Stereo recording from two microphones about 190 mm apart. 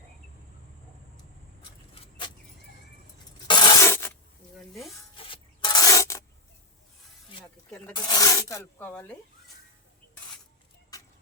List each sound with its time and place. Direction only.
2.0 s vehicle: 25° left (ahead or behind)
3.4 s a sound: 25° left (ahead or behind)
5.1 s filing: 25° left (ahead or behind)
7.9 s rub: 20° left (ahead or behind)
10.9 s vehicle: 20° left (ahead or behind)